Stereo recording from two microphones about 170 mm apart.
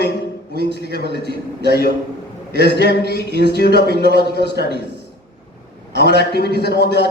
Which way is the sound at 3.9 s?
65° right (ahead or behind).